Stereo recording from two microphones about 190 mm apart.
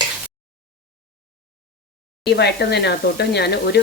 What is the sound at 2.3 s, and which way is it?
Speech, 60° left (ahead or behind).